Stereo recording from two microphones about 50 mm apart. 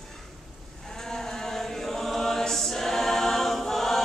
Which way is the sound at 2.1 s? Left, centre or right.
Centre.